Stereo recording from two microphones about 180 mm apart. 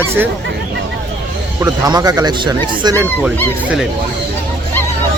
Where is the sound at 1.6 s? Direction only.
20° right (ahead or behind).